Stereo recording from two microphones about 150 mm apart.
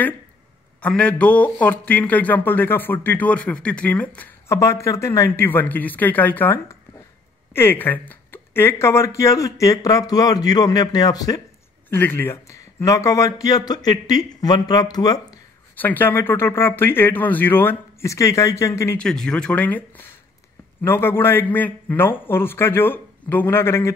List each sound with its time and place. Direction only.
0.7 s speech: 10° left (ahead or behind); by 11.4 s 25° left (ahead or behind)
11.9 s speech: 15° left (ahead or behind)
15.7 s speech: 10° left (ahead or behind)
18.9 s speech: 5° left (ahead or behind)